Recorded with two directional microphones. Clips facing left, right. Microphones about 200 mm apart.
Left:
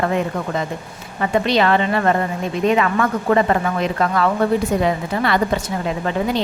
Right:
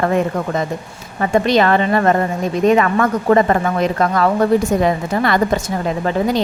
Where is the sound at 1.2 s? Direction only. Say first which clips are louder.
Right 3 dB; 45° right (ahead or behind).